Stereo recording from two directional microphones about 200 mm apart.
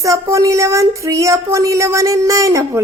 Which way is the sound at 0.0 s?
15° right (ahead or behind).